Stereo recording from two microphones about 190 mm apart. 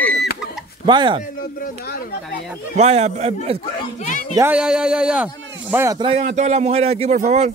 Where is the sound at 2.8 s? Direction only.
35° right (ahead or behind).